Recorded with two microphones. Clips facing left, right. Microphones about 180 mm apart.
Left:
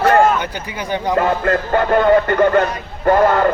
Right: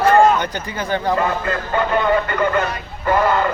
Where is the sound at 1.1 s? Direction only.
55° left (ahead or behind).